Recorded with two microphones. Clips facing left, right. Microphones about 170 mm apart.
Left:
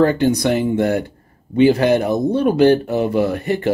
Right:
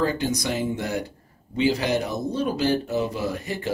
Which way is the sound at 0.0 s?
60° left (ahead or behind).